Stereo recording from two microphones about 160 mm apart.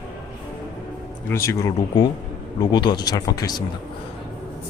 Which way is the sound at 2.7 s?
25° left (ahead or behind).